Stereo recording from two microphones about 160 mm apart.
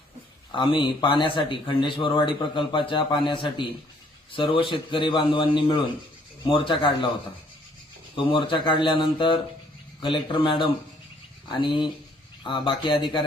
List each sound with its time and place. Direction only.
0.5 s a man's voice: 35° left (ahead or behind)
8.1 s a man's voice: 30° left (ahead or behind)